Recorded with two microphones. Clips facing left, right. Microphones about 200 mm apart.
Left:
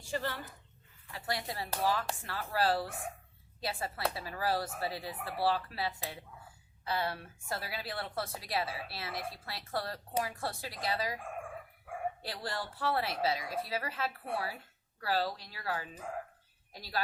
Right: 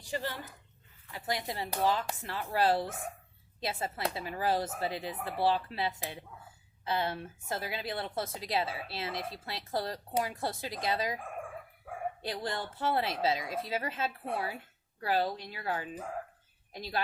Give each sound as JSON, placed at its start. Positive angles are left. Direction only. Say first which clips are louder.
{"t": 0.0, "sound": "a woman's voice", "louder": "even", "side_deg": -15}
{"t": 12.2, "sound": "a woman's voice", "louder": "right 3 dB", "side_deg": -20}